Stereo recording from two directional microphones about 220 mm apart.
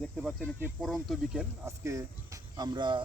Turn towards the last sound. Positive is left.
turn(degrees=-20)  # may be behind; listen again after turning